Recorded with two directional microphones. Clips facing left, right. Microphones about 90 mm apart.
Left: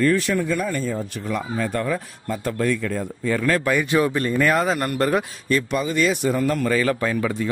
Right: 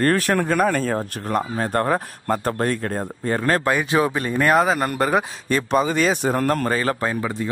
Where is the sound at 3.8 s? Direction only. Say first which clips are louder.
Even; 20° right (ahead or behind).